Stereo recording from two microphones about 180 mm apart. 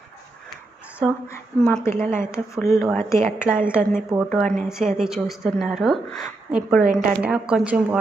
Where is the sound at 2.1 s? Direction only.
15° left (ahead or behind).